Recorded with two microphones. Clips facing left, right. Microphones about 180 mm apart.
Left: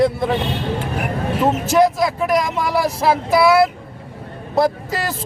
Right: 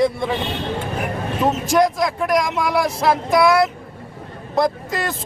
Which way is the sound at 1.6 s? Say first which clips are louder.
Left 2 dB; 5° left (ahead or behind).